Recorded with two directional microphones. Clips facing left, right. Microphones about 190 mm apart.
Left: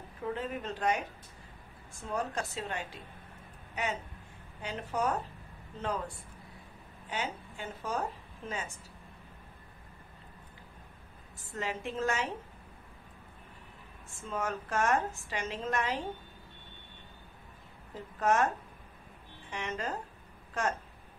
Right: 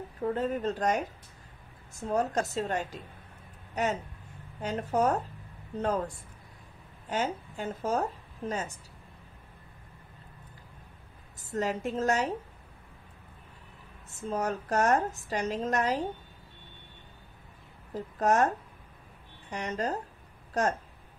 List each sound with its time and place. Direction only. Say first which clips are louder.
0.2 s a woman's voice: right 7 dB; 40° right (ahead or behind)
11.3 s a woman's voice: right 6 dB; 40° right (ahead or behind)
14.0 s a woman's voice: right 5 dB; 40° right (ahead or behind)
18.2 s a woman's voice: right 3 dB; 40° right (ahead or behind)
19.5 s a woman's voice: right 4 dB; 40° right (ahead or behind)